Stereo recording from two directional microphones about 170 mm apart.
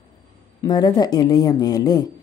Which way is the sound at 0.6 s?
25° left (ahead or behind).